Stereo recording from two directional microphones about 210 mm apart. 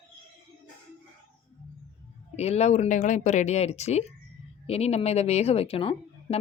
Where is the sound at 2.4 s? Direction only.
30° left (ahead or behind).